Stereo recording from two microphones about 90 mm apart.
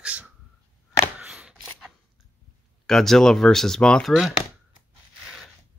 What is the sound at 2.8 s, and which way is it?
Speech, 5° left (ahead or behind).